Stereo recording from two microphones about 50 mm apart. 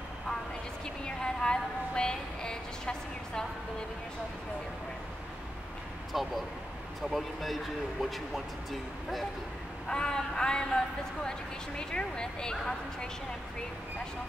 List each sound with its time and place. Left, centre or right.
0.8 s a sound: centre
6.1 s speech: centre
9.8 s speech: centre
11.9 s speech: centre